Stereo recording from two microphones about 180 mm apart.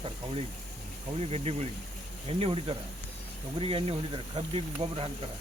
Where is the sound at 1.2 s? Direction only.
35° right (ahead or behind).